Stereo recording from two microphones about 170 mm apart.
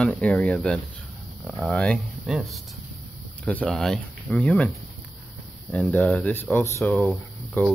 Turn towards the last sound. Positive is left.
turn(degrees=5)  # may be behind; listen again after turning